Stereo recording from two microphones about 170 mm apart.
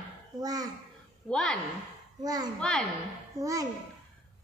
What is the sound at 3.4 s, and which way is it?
Speech, 20° right (ahead or behind).